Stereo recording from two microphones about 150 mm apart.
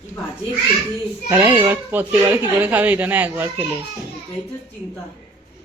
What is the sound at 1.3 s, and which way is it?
Speech, 20° right (ahead or behind).